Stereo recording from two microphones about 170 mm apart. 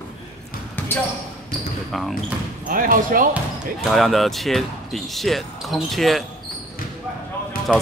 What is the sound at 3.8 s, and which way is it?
Speech, centre (ahead or behind).